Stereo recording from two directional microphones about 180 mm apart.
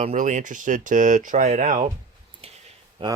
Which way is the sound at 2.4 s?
35° right (ahead or behind).